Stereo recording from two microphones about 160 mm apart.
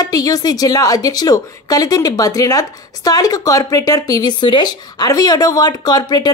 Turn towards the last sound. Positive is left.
turn(degrees=25)  # may be behind; listen again after turning